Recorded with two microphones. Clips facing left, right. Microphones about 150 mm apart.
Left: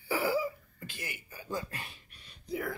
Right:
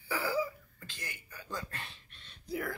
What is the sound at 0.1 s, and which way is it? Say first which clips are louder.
Throat clearing: left 3 dB; 15° left (ahead or behind).